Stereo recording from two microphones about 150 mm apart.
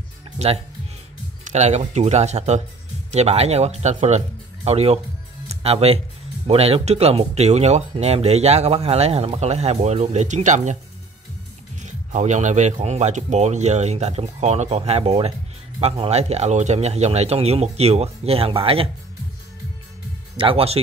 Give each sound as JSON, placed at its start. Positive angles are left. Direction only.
{"t": 0.4, "sound": "speech", "side_deg": -45}
{"t": 11.8, "sound": "speech", "side_deg": -55}
{"t": 20.3, "sound": "speech", "side_deg": -40}